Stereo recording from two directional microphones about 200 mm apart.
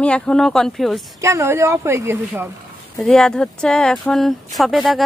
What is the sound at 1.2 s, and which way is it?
A woman's voice, 15° right (ahead or behind).